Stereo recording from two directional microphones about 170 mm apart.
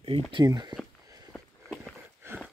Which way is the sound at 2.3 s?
15° right (ahead or behind).